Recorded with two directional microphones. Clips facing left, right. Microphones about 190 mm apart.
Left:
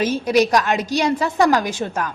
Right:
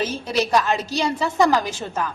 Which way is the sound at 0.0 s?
15° left (ahead or behind).